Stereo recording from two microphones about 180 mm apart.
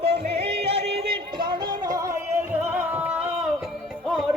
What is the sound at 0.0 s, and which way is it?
Yodeling, 35° right (ahead or behind).